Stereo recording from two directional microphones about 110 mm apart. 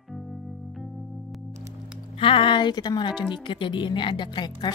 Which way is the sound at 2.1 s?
55° left (ahead or behind).